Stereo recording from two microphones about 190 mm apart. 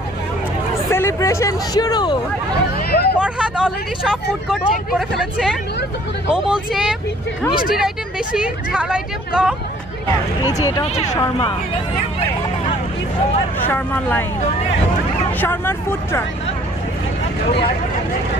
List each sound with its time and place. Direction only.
0.8 s speech: 15° left (ahead or behind)
2.9 s speech: 55° left (ahead or behind)
3.2 s speech: 5° right (ahead or behind)
8.4 s speech: 5° right (ahead or behind)
10.6 s speech: 15° left (ahead or behind)
13.7 s speech: 10° left (ahead or behind)
15.4 s speech: 10° left (ahead or behind)